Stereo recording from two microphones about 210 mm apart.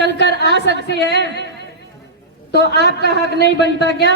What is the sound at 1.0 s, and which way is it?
Speech, 55° right (ahead or behind).